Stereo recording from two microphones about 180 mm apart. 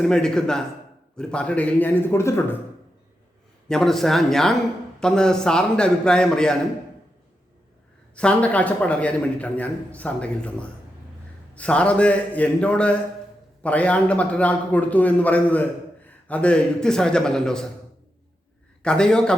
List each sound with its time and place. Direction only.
0.0 s a man's voice: 5° left (ahead or behind)
3.7 s a man's voice: centre (ahead or behind)
8.1 s a man's voice: 5° left (ahead or behind)
11.5 s a man's voice: 5° left (ahead or behind)
18.8 s a man's voice: 5° left (ahead or behind)